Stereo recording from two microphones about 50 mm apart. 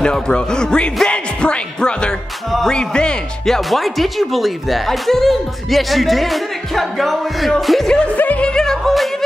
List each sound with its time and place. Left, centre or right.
0.0 s speech: centre
1.0 s music: centre
2.6 s speech: centre
3.4 s speech: centre
8.4 s music: centre